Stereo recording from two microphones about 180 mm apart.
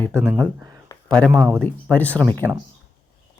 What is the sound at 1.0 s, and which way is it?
Speech, 5° left (ahead or behind).